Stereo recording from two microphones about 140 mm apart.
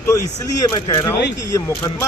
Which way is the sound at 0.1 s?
25° left (ahead or behind).